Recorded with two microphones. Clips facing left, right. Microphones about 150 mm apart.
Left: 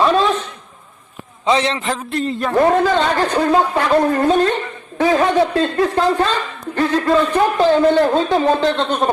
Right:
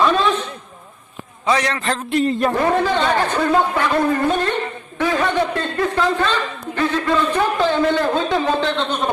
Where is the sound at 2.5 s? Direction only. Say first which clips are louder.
Left 4 dB; 40° left (ahead or behind).